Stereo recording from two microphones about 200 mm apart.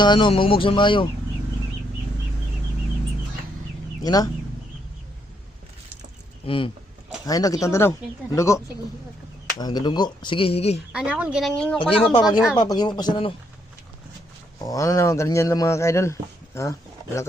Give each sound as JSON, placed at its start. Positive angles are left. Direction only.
{"t": 0.0, "sound": "speech", "side_deg": 25}
{"t": 4.0, "sound": "speech", "side_deg": 20}
{"t": 6.4, "sound": "speech", "side_deg": 25}
{"t": 10.9, "sound": "a woman's voice", "side_deg": -5}
{"t": 12.1, "sound": "speech", "side_deg": 20}
{"t": 14.6, "sound": "speech", "side_deg": 15}